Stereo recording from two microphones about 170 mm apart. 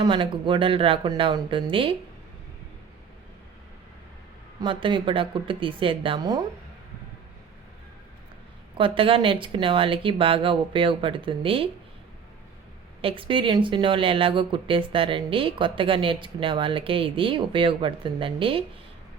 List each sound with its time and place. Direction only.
0.0 s speech: 30° right (ahead or behind)
4.6 s speech: 30° right (ahead or behind)
8.8 s speech: 30° right (ahead or behind)
13.0 s speech: 30° right (ahead or behind)